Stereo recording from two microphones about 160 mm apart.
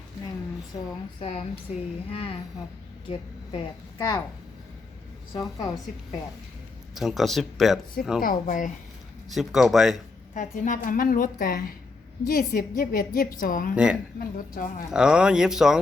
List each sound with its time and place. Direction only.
1.2 s a woman's voice: 40° left (ahead or behind); by 4.2 s 25° left (ahead or behind)
5.3 s a woman's voice: 25° left (ahead or behind)
6.9 s speech: centre (ahead or behind)
8.2 s a woman's voice: 60° left (ahead or behind)
9.3 s speech: centre (ahead or behind)
10.3 s a woman's voice: 50° left (ahead or behind)
13.7 s speech: 5° right (ahead or behind)
14.2 s a woman's voice: 60° left (ahead or behind)
14.8 s speech: 5° right (ahead or behind)